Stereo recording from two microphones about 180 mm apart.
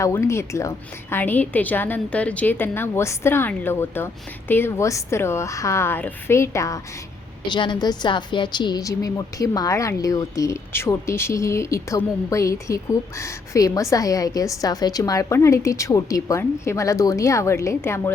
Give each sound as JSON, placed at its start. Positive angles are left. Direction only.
{"t": 0.0, "sound": "a woman's voice", "side_deg": 15}